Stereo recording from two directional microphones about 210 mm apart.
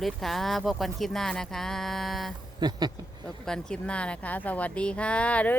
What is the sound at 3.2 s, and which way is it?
Speech, 5° left (ahead or behind).